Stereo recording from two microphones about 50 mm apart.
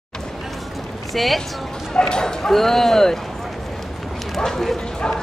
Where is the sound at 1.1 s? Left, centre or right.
Centre.